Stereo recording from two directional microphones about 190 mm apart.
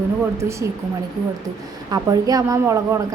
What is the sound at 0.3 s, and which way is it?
Speech, 15° right (ahead or behind).